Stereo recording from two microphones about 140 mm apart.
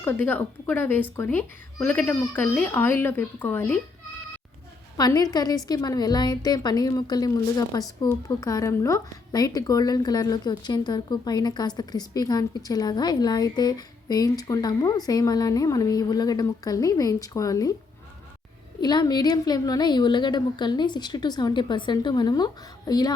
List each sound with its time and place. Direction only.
0.0 s speech: 15° left (ahead or behind)
4.9 s a woman's voice: 25° left (ahead or behind)
18.8 s a woman's voice: 30° left (ahead or behind)